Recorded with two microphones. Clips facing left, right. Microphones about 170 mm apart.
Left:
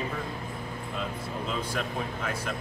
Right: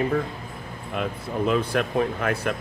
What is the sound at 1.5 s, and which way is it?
Speech, 65° right (ahead or behind).